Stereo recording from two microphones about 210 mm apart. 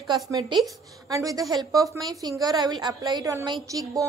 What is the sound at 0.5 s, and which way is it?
A woman's voice, 20° right (ahead or behind).